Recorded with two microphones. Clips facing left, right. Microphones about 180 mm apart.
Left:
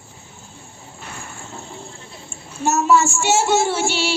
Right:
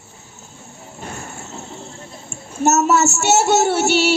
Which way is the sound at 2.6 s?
45° right (ahead or behind).